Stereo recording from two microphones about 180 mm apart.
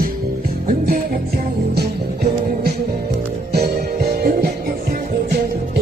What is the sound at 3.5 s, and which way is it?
Music, 60° right (ahead or behind).